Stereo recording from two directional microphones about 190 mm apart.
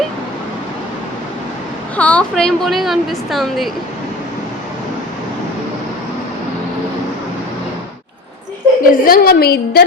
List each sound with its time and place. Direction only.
2.0 s a woman's voice: 5° left (ahead or behind)
8.8 s a woman's voice: 50° left (ahead or behind)